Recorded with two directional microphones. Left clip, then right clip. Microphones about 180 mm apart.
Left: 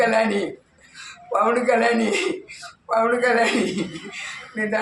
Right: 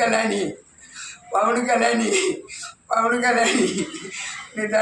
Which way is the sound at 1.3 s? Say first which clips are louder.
Left 1 dB; 15° left (ahead or behind).